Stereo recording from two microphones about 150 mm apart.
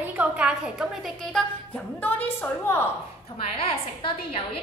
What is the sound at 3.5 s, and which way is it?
Speech, 40° left (ahead or behind).